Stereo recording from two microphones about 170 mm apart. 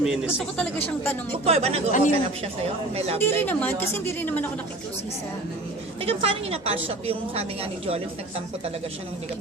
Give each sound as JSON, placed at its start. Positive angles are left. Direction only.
{"t": 0.5, "sound": "speech", "side_deg": 10}
{"t": 1.5, "sound": "a woman's voice", "side_deg": -35}
{"t": 1.9, "sound": "speech", "side_deg": 50}
{"t": 2.9, "sound": "a woman's voice", "side_deg": -35}
{"t": 3.2, "sound": "speech", "side_deg": 15}
{"t": 6.0, "sound": "a woman's voice", "side_deg": -35}